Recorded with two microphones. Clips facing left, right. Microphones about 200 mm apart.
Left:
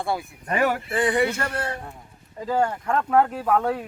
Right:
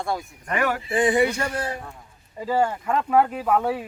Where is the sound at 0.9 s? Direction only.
15° right (ahead or behind).